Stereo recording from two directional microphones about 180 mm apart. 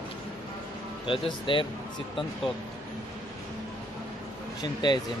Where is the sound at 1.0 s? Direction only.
30° left (ahead or behind).